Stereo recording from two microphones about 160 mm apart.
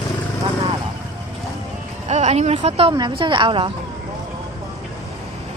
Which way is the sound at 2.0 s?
45° right (ahead or behind).